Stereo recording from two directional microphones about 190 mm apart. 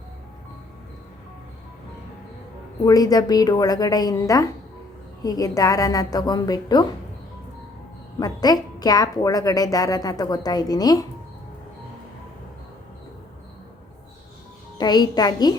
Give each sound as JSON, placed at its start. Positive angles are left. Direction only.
{"t": 2.8, "sound": "a woman's voice", "side_deg": 20}
{"t": 8.2, "sound": "a woman's voice", "side_deg": 20}
{"t": 14.8, "sound": "a woman's voice", "side_deg": 20}